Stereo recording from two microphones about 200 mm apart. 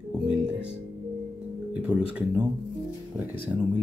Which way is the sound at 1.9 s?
5° right (ahead or behind).